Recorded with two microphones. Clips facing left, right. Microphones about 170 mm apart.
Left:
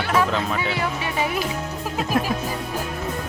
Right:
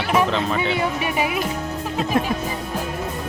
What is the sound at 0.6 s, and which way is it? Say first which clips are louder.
Speech: right 3 dB; 25° right (ahead or behind).